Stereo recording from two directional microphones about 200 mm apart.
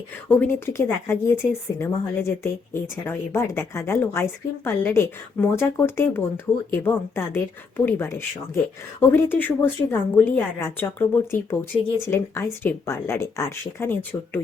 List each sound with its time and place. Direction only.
0.3 s speech: 10° left (ahead or behind)
11.7 s speech: 35° left (ahead or behind)
12.1 s speech: 15° left (ahead or behind)